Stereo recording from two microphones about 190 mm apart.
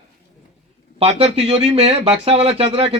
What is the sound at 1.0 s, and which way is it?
Speech, 35° right (ahead or behind).